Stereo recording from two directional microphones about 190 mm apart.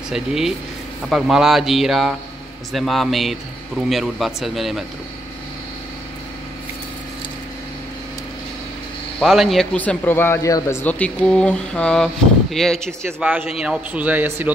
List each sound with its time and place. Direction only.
0.1 s a man's voice: centre (ahead or behind)
9.2 s a man's voice: centre (ahead or behind)
13.0 s a man's voice: 10° right (ahead or behind)